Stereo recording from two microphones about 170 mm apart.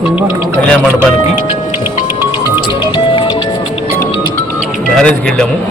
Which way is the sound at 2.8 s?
25° left (ahead or behind).